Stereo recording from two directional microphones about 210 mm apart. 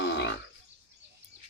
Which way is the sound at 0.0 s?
55° left (ahead or behind).